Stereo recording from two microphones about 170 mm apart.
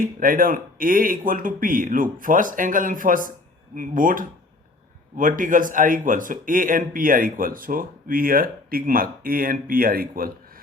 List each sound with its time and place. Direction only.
0.0 s speech: 55° right (ahead or behind)